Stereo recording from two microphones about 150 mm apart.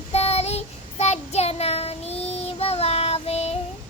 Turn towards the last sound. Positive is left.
turn(degrees=45)  # may be behind; listen again after turning